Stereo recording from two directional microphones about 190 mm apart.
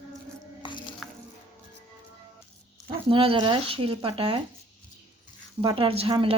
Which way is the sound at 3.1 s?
30° right (ahead or behind).